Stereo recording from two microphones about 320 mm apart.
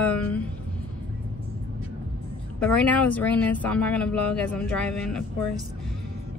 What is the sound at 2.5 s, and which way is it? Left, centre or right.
Speech, centre.